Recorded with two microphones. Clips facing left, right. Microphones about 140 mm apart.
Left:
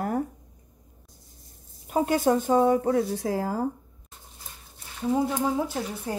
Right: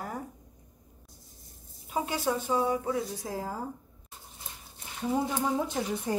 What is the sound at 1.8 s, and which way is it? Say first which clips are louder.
A woman's voice: left 8 dB; 50° left (ahead or behind).